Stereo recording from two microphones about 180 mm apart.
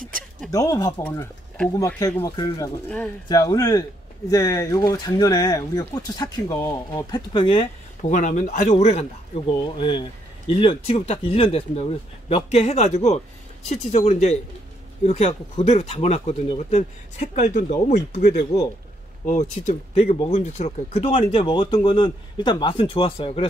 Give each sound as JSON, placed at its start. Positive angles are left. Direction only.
{"t": 0.5, "sound": "speech", "side_deg": 20}
{"t": 8.0, "sound": "speech", "side_deg": 45}